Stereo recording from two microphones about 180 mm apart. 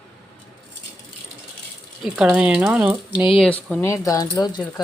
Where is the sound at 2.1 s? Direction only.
5° right (ahead or behind).